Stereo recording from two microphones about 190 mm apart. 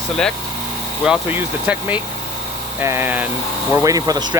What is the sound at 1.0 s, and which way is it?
Speech, 5° right (ahead or behind).